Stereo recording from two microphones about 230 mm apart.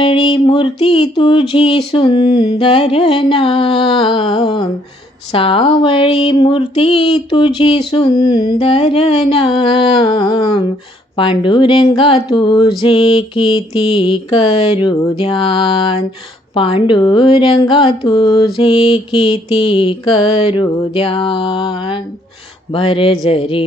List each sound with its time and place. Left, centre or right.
0.0 s speech: left